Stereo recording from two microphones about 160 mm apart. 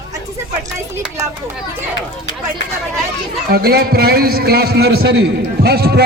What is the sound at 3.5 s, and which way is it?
A man's voice, 75° right (ahead or behind).